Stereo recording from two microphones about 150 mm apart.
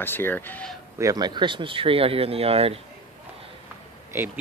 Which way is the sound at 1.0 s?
25° right (ahead or behind).